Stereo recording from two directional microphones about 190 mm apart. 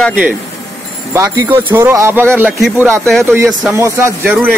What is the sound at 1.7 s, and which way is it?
Speech, 10° right (ahead or behind).